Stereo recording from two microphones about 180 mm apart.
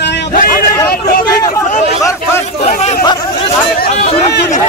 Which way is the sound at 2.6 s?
45° left (ahead or behind).